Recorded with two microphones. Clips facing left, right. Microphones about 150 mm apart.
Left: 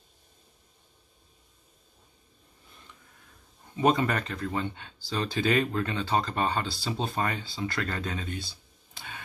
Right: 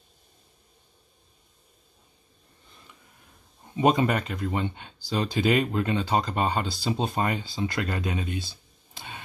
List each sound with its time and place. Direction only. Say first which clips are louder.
3.7 s speech: right 3 dB; 15° right (ahead or behind)